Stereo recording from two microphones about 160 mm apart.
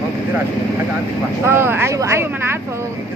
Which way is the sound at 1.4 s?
15° right (ahead or behind).